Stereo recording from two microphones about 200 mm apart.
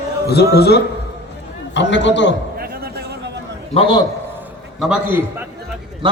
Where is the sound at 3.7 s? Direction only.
25° left (ahead or behind).